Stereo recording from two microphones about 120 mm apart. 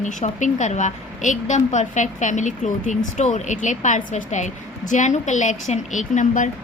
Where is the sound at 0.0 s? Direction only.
90° left.